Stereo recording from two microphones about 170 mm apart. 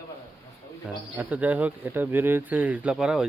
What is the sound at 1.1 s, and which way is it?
Speech, 10° right (ahead or behind).